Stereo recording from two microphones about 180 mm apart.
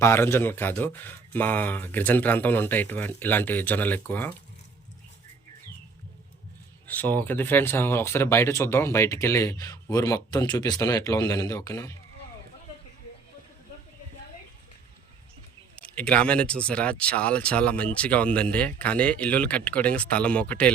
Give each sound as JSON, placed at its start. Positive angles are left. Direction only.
{"t": 0.0, "sound": "speech", "side_deg": 15}
{"t": 6.8, "sound": "speech", "side_deg": 10}
{"t": 15.7, "sound": "speech", "side_deg": 5}